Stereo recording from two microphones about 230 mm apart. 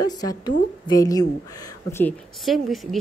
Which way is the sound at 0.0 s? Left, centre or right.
Centre.